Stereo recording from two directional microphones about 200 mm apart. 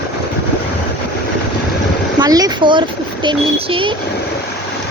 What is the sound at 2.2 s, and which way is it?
A woman's voice, 20° right (ahead or behind).